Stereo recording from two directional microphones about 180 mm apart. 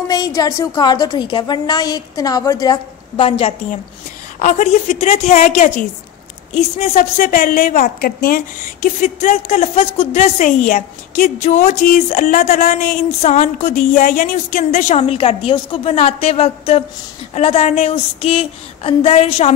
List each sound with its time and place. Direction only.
0.1 s a woman's voice: 20° left (ahead or behind); by 8.4 s 55° left (ahead or behind)
8.8 s speech: 45° left (ahead or behind)